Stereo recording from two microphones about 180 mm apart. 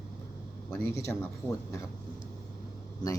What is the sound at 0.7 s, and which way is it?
Speech, 10° left (ahead or behind).